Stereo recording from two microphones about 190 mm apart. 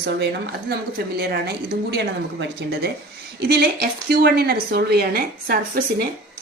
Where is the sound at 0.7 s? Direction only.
55° right (ahead or behind).